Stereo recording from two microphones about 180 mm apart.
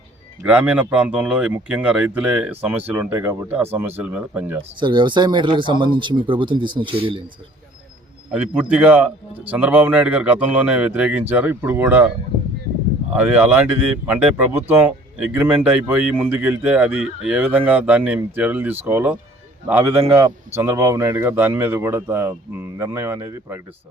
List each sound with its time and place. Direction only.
0.4 s a man's voice: 5° right (ahead or behind)
4.8 s speech: 25° right (ahead or behind)
8.3 s a man's voice: 10° right (ahead or behind)
14.1 s a man's voice: 10° right (ahead or behind)